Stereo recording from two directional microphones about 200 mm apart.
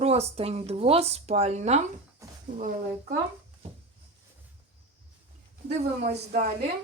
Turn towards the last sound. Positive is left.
turn(degrees=-45)  # may be behind; listen again after turning